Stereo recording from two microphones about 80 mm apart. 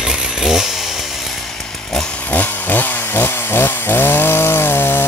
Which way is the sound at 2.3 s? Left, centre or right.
Left.